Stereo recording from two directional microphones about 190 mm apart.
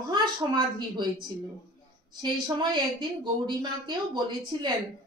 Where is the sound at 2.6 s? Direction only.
25° right (ahead or behind).